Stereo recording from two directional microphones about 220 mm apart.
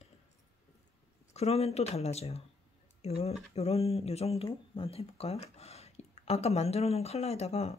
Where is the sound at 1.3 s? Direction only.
30° left (ahead or behind).